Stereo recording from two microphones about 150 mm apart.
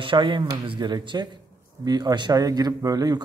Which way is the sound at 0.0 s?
35° right (ahead or behind).